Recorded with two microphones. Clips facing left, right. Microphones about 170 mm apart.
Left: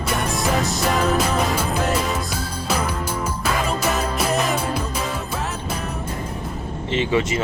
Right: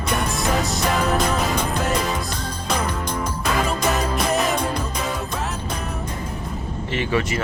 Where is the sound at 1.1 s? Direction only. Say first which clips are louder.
Left 1 dB; 5° left (ahead or behind).